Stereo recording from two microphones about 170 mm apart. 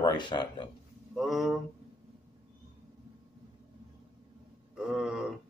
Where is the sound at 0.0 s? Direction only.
25° left (ahead or behind).